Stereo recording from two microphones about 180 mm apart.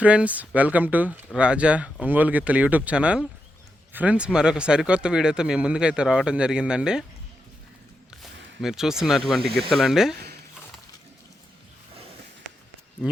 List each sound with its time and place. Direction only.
0.0 s speech: 5° right (ahead or behind)
8.2 s speech: centre (ahead or behind)
10.2 s a sound: 65° right (ahead or behind)